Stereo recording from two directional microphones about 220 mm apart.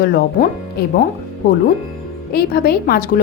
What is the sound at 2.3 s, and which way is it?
Speech, 45° left (ahead or behind).